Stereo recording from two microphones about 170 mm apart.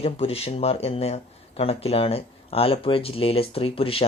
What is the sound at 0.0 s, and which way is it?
Speech, 35° left (ahead or behind).